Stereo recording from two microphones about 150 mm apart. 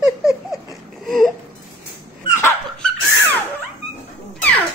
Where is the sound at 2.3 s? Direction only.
15° left (ahead or behind).